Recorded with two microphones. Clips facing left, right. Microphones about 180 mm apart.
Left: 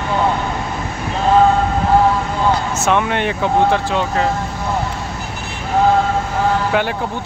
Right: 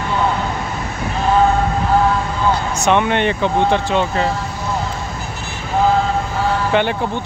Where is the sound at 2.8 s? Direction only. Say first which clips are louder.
Right 4 dB; centre (ahead or behind).